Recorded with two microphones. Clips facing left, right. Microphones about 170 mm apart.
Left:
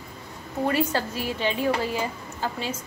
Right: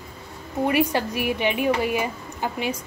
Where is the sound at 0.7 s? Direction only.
15° right (ahead or behind).